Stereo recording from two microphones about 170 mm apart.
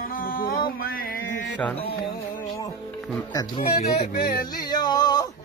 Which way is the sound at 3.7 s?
65° left (ahead or behind).